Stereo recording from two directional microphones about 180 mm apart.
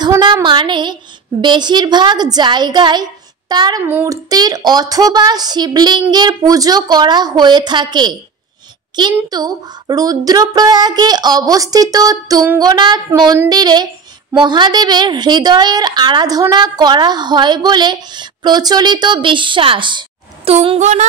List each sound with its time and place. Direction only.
0.0 s a woman's voice: 25° right (ahead or behind)